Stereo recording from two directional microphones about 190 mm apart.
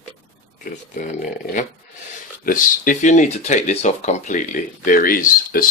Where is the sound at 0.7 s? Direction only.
45° left (ahead or behind).